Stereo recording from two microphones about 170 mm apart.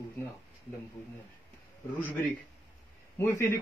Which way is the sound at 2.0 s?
10° left (ahead or behind).